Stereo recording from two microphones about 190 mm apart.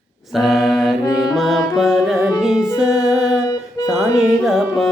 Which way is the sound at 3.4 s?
15° left (ahead or behind).